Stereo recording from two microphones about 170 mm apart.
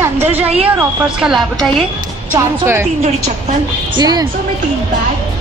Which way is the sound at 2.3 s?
15° right (ahead or behind).